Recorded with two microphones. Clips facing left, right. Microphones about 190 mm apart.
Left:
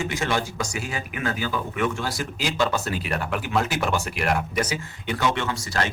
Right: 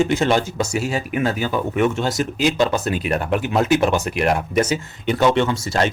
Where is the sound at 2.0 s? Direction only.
20° right (ahead or behind).